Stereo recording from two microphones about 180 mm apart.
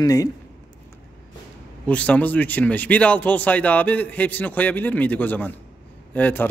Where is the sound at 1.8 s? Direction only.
5° left (ahead or behind).